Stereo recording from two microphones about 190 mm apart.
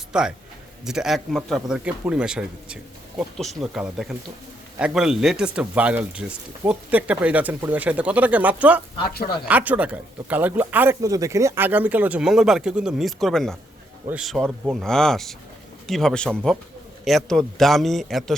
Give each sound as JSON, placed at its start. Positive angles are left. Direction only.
{"t": 0.1, "sound": "a man's voice", "side_deg": -5}
{"t": 9.0, "sound": "speech", "side_deg": 50}
{"t": 9.5, "sound": "a man's voice", "side_deg": -10}